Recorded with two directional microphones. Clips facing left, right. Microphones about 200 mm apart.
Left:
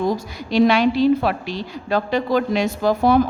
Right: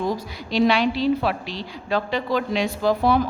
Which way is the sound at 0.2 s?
45° left (ahead or behind).